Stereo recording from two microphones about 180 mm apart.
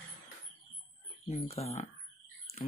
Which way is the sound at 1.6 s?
35° left (ahead or behind).